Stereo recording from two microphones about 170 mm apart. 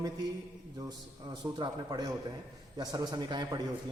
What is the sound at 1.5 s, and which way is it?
A man's voice, 25° right (ahead or behind).